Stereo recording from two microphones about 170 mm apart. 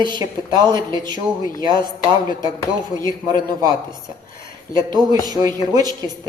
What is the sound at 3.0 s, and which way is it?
Speech, 25° right (ahead or behind).